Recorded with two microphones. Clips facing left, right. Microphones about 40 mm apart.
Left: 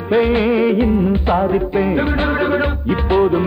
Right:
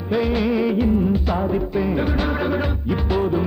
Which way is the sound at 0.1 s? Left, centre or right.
Left.